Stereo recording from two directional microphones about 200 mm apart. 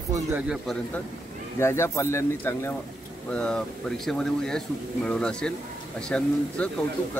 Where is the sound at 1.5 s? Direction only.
15° left (ahead or behind).